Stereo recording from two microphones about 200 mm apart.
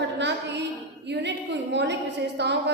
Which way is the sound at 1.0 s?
60° right (ahead or behind).